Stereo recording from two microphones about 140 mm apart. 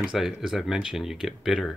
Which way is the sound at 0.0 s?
5° right (ahead or behind).